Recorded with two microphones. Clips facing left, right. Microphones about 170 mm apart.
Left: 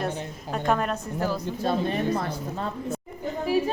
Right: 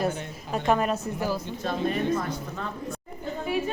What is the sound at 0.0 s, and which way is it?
Speech, centre (ahead or behind).